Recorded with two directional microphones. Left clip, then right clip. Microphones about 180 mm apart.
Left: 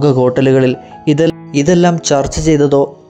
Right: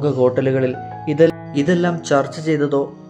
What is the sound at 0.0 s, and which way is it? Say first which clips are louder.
Speech: left 5 dB; 35° left (ahead or behind).